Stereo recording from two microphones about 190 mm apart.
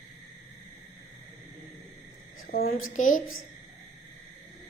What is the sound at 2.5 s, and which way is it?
Speech, 50° left (ahead or behind).